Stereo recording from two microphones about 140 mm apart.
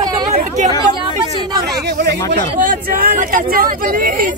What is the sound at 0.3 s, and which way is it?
Chatter, 60° right (ahead or behind).